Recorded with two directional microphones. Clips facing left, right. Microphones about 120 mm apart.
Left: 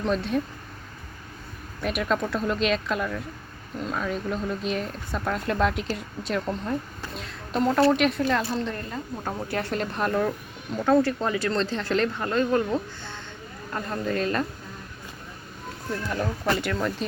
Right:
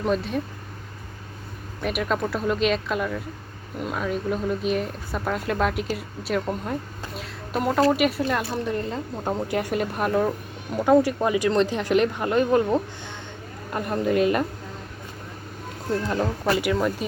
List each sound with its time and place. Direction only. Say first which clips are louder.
0.0 s speech: right 1 dB; centre (ahead or behind)
1.8 s a woman's voice: right 1 dB; centre (ahead or behind)
15.9 s speech: right 4 dB; 25° right (ahead or behind)
16.5 s speech: right 4 dB; 10° right (ahead or behind)